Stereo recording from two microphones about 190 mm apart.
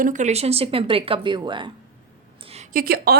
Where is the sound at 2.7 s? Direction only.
50° right (ahead or behind).